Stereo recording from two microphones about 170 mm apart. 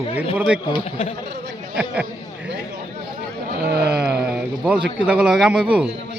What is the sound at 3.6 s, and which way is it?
Speech, 70° right (ahead or behind).